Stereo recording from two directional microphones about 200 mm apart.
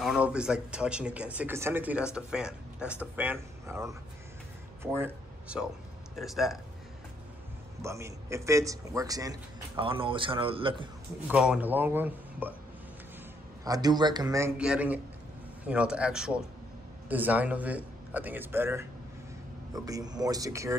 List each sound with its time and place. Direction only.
0.0 s speech: 5° right (ahead or behind)
7.8 s a man's voice: 15° right (ahead or behind)
11.2 s a man's voice: 5° right (ahead or behind)
13.7 s a man's voice: 20° right (ahead or behind)
14.6 s a man's voice: 5° right (ahead or behind)